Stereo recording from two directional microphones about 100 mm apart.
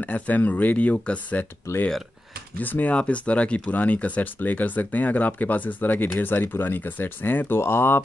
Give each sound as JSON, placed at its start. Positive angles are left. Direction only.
{"t": 0.0, "sound": "speech", "side_deg": 15}